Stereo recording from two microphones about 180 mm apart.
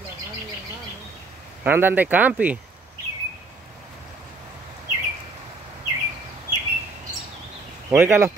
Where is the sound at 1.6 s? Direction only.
10° right (ahead or behind).